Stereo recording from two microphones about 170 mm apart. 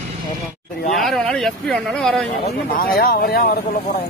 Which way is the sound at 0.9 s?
Centre (ahead or behind).